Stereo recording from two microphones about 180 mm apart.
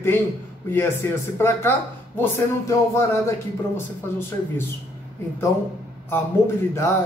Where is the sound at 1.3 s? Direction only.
15° left (ahead or behind).